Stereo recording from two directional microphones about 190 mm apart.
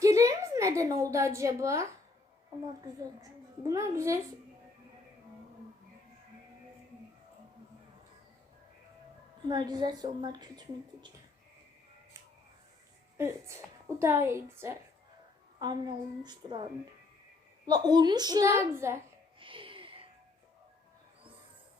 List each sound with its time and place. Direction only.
0.0 s a sound: 15° right (ahead or behind)
3.7 s a woman's voice: 15° right (ahead or behind)
9.5 s a woman's voice: 20° right (ahead or behind)
13.1 s a woman's voice: 15° right (ahead or behind)
17.7 s a woman's voice: 20° right (ahead or behind)
19.4 s a sound: 25° right (ahead or behind)